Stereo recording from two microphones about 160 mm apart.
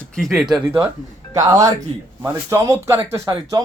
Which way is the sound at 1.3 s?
20° right (ahead or behind).